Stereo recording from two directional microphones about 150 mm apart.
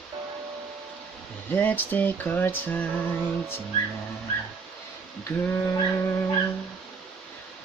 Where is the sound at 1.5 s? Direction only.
10° left (ahead or behind).